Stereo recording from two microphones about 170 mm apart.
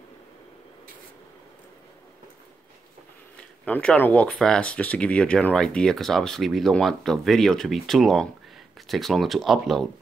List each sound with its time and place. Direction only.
3.6 s speech: 5° left (ahead or behind)